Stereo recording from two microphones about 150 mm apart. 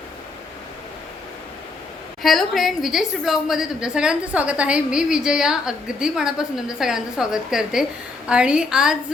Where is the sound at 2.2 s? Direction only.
Centre (ahead or behind).